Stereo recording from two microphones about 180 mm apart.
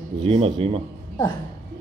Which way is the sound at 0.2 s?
35° right (ahead or behind).